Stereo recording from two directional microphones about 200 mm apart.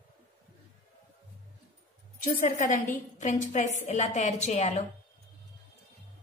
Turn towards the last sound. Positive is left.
turn(degrees=35)  # may be behind; listen again after turning